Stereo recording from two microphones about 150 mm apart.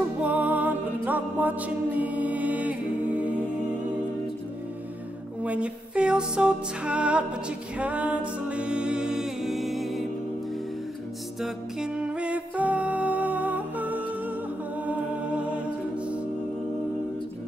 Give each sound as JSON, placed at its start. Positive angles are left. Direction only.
{"t": 0.2, "sound": "music", "side_deg": -10}
{"t": 5.4, "sound": "music", "side_deg": -10}
{"t": 11.4, "sound": "music", "side_deg": -5}